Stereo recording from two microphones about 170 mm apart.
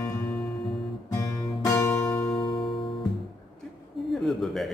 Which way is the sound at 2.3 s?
30° left (ahead or behind).